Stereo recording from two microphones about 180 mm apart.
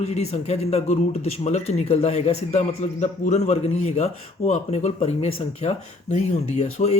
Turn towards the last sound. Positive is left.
turn(degrees=35)  # may be behind; listen again after turning